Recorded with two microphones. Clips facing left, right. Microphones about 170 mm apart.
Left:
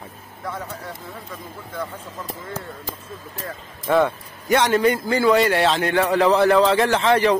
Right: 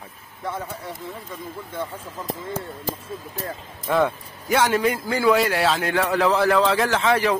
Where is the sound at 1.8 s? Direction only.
30° right (ahead or behind).